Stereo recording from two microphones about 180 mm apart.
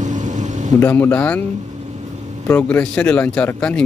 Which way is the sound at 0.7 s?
15° left (ahead or behind).